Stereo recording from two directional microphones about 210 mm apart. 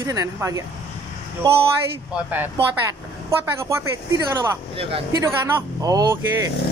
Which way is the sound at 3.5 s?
15° right (ahead or behind).